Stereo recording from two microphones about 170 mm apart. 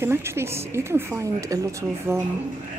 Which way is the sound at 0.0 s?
15° right (ahead or behind).